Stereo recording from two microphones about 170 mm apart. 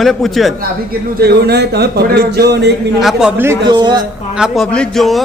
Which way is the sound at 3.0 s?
Centre (ahead or behind).